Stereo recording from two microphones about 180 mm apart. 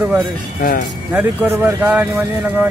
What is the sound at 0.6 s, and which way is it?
Speech, 50° left (ahead or behind).